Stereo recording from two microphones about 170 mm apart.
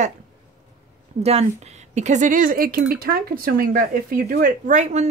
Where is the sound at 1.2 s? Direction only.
40° right (ahead or behind).